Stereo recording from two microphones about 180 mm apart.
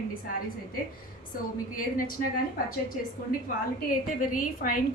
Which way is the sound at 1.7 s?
50° left (ahead or behind).